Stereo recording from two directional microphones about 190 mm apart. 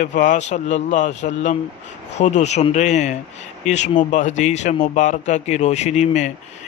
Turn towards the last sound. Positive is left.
turn(degrees=35)  # may be behind; listen again after turning